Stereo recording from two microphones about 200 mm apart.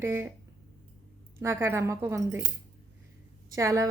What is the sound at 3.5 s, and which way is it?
Speech, 15° right (ahead or behind).